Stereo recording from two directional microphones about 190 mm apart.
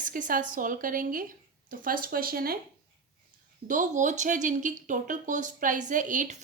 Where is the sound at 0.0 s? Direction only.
45° right (ahead or behind).